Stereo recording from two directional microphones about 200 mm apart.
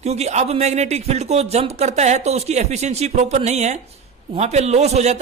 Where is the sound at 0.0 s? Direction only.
35° right (ahead or behind).